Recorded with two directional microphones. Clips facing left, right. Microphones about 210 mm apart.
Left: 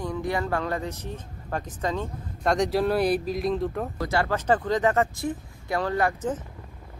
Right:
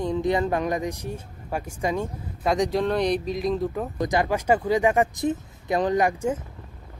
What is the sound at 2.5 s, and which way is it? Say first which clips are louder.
Speech: even; centre (ahead or behind).